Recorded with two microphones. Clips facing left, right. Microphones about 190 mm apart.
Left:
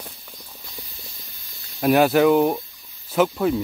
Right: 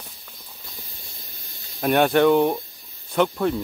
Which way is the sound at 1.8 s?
5° left (ahead or behind).